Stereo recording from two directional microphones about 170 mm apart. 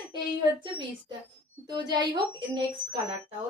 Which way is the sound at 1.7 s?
25° right (ahead or behind).